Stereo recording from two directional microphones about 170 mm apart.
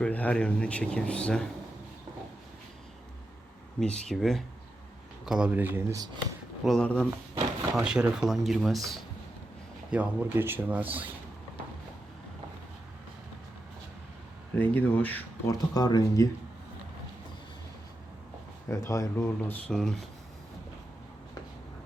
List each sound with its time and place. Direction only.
0.0 s speech: 10° left (ahead or behind)
3.8 s speech: 5° left (ahead or behind); by 6.1 s 15° right (ahead or behind)
6.7 s speech: 5° left (ahead or behind)
7.8 s speech: 5° right (ahead or behind)
14.6 s speech: 10° left (ahead or behind)
15.5 s speech: 25° left (ahead or behind)
18.9 s speech: 15° left (ahead or behind)